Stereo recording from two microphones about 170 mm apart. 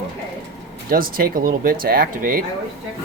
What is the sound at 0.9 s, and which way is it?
Speech, 60° right (ahead or behind).